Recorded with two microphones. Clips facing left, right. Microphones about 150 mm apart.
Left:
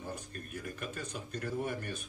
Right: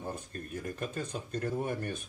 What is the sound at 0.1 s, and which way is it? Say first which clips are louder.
Speech: right 3 dB; 35° right (ahead or behind).